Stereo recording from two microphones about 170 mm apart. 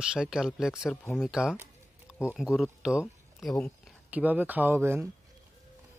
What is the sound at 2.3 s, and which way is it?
Speech, centre (ahead or behind).